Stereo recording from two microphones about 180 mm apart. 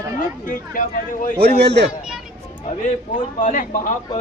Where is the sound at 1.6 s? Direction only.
70° right (ahead or behind).